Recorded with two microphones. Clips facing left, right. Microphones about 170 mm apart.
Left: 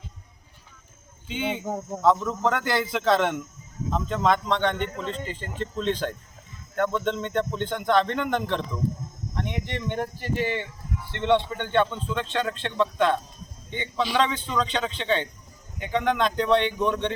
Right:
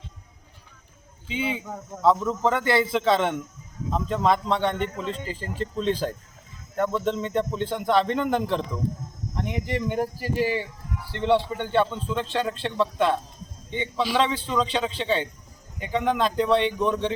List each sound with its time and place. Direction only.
1.3 s speech: centre (ahead or behind)
1.6 s speech: 20° left (ahead or behind)
2.0 s speech: centre (ahead or behind)